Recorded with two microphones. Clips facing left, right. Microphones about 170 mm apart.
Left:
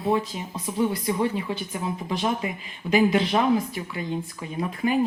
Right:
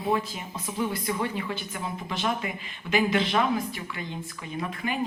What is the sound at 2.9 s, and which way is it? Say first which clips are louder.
Speech: left 4 dB; 35° left (ahead or behind).